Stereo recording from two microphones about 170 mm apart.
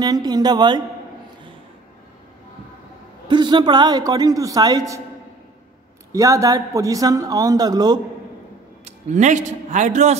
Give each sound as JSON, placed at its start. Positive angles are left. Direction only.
{"t": 0.0, "sound": "speech", "side_deg": -25}
{"t": 3.3, "sound": "speech", "side_deg": -30}
{"t": 6.1, "sound": "speech", "side_deg": -20}
{"t": 8.8, "sound": "a man's voice", "side_deg": -45}